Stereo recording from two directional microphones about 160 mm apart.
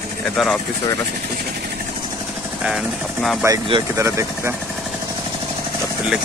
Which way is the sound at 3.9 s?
20° right (ahead or behind).